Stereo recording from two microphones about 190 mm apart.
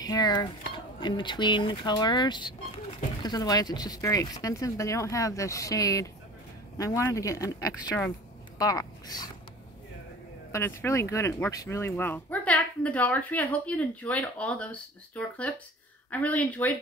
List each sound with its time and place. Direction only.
0.0 s dishes: 20° left (ahead or behind)
1.0 s speech: 25° left (ahead or behind)
10.5 s speech: 15° left (ahead or behind)